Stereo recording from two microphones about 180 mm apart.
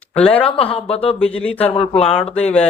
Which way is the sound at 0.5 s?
30° left (ahead or behind).